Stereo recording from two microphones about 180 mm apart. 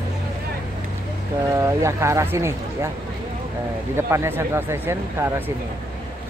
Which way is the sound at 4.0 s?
15° right (ahead or behind).